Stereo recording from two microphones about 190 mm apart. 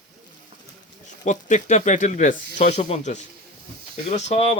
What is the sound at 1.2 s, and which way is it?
Speech, 40° left (ahead or behind).